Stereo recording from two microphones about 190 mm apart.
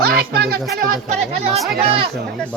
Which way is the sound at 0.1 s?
55° right (ahead or behind).